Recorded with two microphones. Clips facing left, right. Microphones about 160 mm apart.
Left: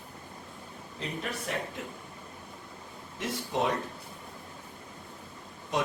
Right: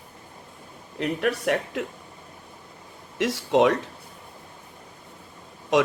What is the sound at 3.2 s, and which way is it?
Speech, 90° right.